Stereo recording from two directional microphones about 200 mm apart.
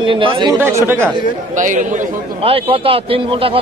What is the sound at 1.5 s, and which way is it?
A man's voice, 40° right (ahead or behind).